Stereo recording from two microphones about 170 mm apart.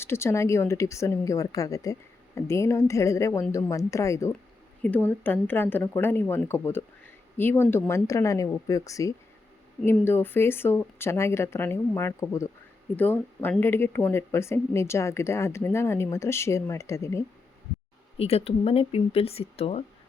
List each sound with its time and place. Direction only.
0.0 s speech: 15° left (ahead or behind)
18.2 s speech: 35° left (ahead or behind)